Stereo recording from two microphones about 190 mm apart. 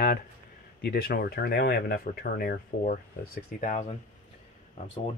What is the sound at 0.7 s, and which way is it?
Speech, 55° left (ahead or behind).